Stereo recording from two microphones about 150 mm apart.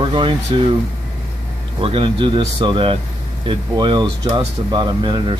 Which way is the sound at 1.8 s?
35° right (ahead or behind).